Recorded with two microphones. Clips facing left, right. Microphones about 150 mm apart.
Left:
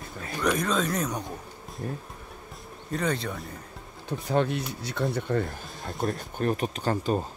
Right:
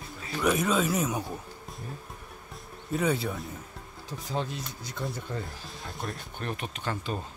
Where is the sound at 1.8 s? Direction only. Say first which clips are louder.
Left 9 dB; 50° left (ahead or behind).